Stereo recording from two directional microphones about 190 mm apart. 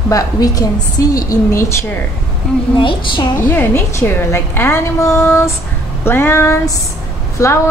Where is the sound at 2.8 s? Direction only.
25° left (ahead or behind).